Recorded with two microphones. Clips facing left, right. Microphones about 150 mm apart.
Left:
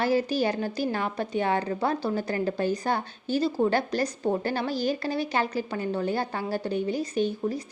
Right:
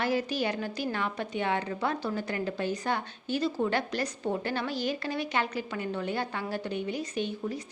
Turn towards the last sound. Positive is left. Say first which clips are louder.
# left 6 dB
turn(degrees=40)  # may be behind; listen again after turning